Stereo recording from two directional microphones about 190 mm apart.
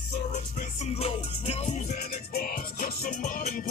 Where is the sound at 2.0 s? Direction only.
55° left (ahead or behind).